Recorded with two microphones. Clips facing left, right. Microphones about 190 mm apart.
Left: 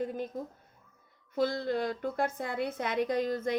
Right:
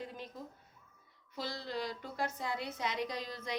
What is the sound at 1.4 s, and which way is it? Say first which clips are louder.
A woman's voice: left 10 dB; 50° left (ahead or behind).